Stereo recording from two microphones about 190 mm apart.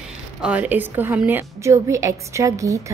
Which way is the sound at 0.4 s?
5° right (ahead or behind).